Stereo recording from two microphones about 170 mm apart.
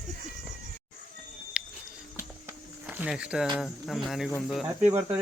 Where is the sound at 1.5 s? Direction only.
5° right (ahead or behind).